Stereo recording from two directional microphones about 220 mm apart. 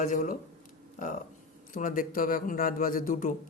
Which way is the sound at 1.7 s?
40° left (ahead or behind).